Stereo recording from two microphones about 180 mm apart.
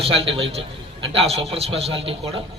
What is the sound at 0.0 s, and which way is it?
A man's voice, 30° right (ahead or behind).